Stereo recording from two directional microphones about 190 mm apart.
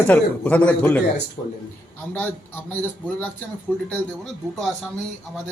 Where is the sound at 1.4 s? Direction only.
20° left (ahead or behind).